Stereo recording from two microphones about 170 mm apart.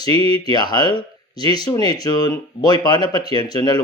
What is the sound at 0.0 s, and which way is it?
Speech, 25° left (ahead or behind).